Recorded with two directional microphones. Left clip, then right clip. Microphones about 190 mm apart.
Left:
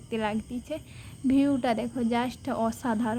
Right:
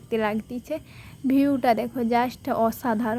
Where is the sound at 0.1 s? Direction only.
25° right (ahead or behind).